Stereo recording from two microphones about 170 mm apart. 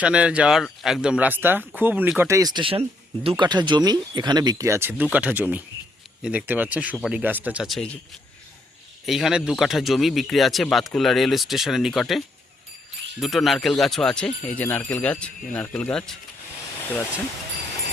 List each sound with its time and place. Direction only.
0.0 s speech: 5° right (ahead or behind)
9.0 s speech: centre (ahead or behind)